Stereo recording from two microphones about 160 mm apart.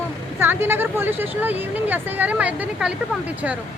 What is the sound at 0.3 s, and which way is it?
Speech, 15° right (ahead or behind).